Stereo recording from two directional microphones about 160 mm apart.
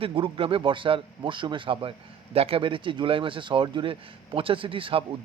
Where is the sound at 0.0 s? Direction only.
35° right (ahead or behind).